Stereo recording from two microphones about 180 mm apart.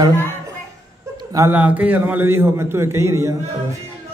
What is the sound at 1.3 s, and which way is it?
A man's voice, 15° right (ahead or behind).